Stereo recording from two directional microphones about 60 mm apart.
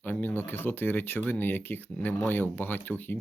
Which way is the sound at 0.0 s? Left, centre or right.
Left.